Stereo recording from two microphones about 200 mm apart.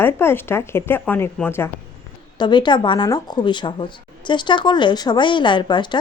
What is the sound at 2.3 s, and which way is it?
Speech, 20° left (ahead or behind).